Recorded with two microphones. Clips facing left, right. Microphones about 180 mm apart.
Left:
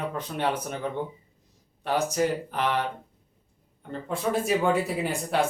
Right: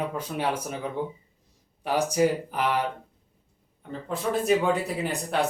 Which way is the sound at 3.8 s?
Centre (ahead or behind).